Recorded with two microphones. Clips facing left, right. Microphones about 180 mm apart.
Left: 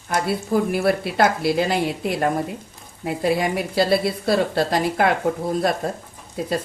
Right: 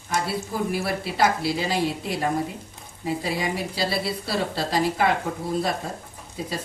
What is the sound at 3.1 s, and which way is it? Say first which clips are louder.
Speech: left 5 dB; 60° left (ahead or behind).